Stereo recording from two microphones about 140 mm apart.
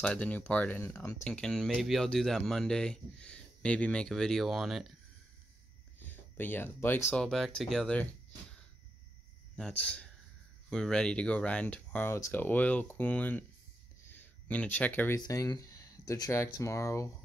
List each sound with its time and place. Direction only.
0.0 s speech: 5° left (ahead or behind)
1.2 s speech: 5° left (ahead or behind)
5.9 s a sound: 15° left (ahead or behind)
7.1 s speech: 5° left (ahead or behind)
14.0 s a sound: 15° left (ahead or behind)
15.1 s speech: 25° left (ahead or behind)